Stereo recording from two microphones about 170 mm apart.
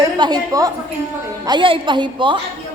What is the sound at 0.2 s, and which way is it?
A woman's voice, 25° right (ahead or behind).